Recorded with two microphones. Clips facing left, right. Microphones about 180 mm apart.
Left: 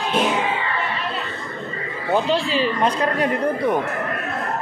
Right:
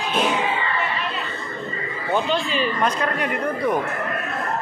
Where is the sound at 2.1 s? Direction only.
30° left (ahead or behind).